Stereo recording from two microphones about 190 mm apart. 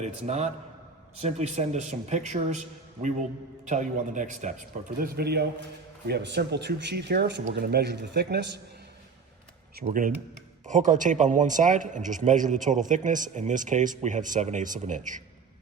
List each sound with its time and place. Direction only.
0.0 s speech: 35° right (ahead or behind); by 8.6 s 65° right (ahead or behind)
9.8 s speech: 40° right (ahead or behind)